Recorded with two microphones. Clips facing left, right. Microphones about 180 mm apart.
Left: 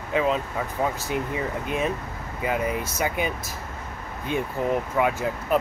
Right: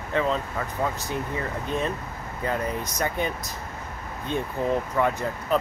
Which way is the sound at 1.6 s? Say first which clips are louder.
Left 1 dB; 10° left (ahead or behind).